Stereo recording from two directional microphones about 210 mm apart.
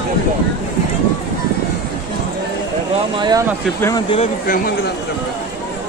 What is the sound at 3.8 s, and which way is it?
Speech, 15° left (ahead or behind).